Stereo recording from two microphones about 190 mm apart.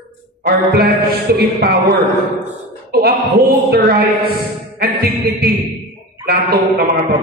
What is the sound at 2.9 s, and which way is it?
Speech, 55° right (ahead or behind).